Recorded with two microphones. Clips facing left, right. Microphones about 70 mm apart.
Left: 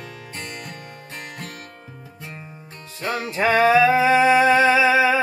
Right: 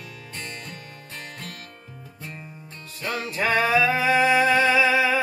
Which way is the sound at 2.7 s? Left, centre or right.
Left.